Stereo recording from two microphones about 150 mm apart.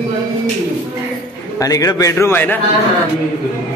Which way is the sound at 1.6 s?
25° left (ahead or behind).